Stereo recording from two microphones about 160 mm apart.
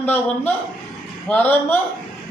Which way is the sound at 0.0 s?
10° left (ahead or behind).